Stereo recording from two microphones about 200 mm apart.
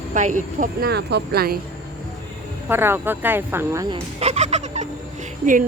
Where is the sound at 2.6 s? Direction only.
10° right (ahead or behind).